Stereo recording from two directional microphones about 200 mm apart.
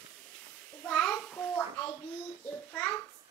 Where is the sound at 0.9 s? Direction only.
5° left (ahead or behind).